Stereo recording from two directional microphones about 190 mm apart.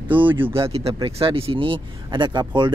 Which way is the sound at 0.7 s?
30° right (ahead or behind).